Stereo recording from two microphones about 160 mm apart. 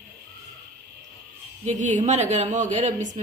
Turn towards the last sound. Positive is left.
turn(degrees=-50)  # may be behind; listen again after turning